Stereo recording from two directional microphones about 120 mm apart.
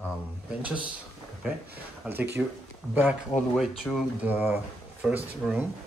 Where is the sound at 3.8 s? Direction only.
Centre (ahead or behind).